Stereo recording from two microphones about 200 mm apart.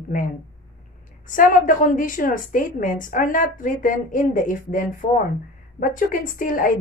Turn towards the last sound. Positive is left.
turn(degrees=45)  # may be behind; listen again after turning